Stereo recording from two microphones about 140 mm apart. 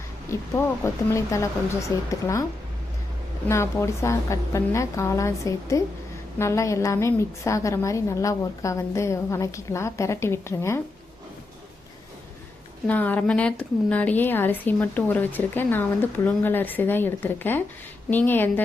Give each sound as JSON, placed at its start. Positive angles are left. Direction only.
{"t": 0.3, "sound": "a woman's voice", "side_deg": 20}
{"t": 3.5, "sound": "a woman's voice", "side_deg": 20}
{"t": 12.9, "sound": "speech", "side_deg": 10}